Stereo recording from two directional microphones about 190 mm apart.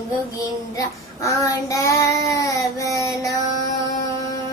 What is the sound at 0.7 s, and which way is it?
Child singing, 15° left (ahead or behind).